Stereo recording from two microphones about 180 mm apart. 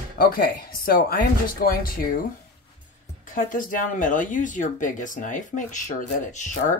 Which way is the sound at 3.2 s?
50° left (ahead or behind).